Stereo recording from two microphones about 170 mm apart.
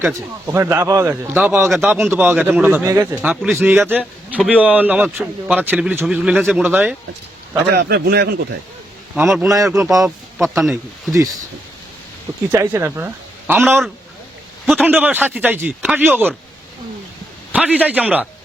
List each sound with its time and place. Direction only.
0.0 s a man's voice: 15° right (ahead or behind)
1.8 s a man's voice: centre (ahead or behind)
7.7 s speech: 65° right (ahead or behind)
9.1 s a man's voice: 5° right (ahead or behind)
10.0 s speech: centre (ahead or behind)
12.5 s a man's voice: 15° right (ahead or behind)
17.5 s a man's voice: 5° right (ahead or behind)